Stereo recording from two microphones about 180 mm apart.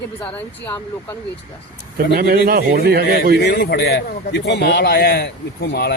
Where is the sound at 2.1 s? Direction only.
55° right (ahead or behind).